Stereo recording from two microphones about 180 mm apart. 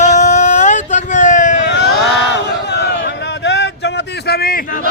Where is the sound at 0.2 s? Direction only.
40° left (ahead or behind).